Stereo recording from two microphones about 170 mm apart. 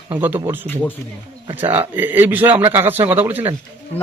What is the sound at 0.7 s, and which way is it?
Speech, 10° left (ahead or behind).